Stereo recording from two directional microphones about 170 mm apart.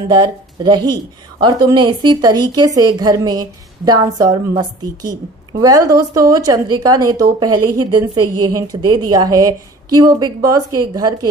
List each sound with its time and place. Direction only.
0.1 s a woman's voice: 25° right (ahead or behind)